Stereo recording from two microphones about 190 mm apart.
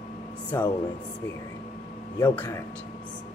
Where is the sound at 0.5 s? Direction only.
15° left (ahead or behind).